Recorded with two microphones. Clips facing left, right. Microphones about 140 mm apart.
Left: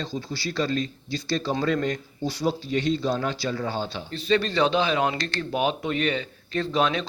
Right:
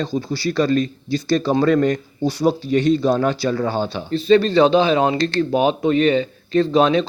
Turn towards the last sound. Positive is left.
turn(degrees=-30)  # may be behind; listen again after turning